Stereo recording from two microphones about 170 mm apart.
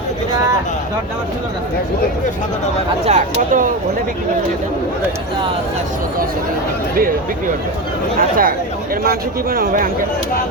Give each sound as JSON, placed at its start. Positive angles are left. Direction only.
{"t": 3.1, "sound": "speech", "side_deg": -50}
{"t": 8.2, "sound": "speech", "side_deg": -55}